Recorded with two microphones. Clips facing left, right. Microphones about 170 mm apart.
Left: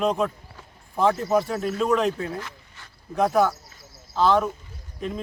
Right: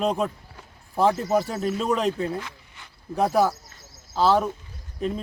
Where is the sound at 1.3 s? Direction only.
30° right (ahead or behind).